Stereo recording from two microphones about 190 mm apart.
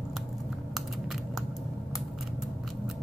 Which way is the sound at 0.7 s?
Centre (ahead or behind).